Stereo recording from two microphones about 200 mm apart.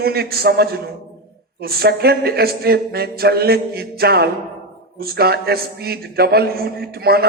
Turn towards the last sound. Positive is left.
turn(degrees=-50)  # may be behind; listen again after turning